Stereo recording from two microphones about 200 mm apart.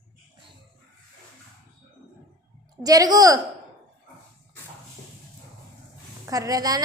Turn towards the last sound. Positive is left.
turn(degrees=-20)  # may be behind; listen again after turning